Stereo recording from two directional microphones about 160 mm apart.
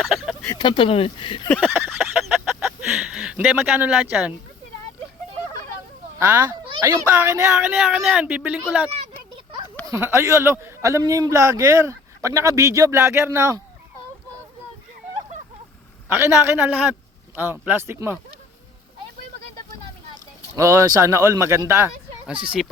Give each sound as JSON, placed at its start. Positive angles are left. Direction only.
{"t": 0.0, "sound": "a sound", "side_deg": -5}
{"t": 0.5, "sound": "speech", "side_deg": 30}
{"t": 1.5, "sound": "a sound", "side_deg": -10}
{"t": 6.1, "sound": "speech", "side_deg": -15}
{"t": 7.8, "sound": "speech", "side_deg": -5}
{"t": 9.8, "sound": "speech", "side_deg": -15}
{"t": 16.0, "sound": "speech", "side_deg": -15}
{"t": 20.6, "sound": "speech", "side_deg": -20}
{"t": 22.3, "sound": "speech", "side_deg": -5}